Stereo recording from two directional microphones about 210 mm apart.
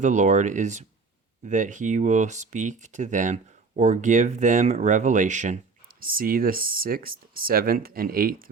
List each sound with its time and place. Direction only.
0.0 s speech: 35° right (ahead or behind)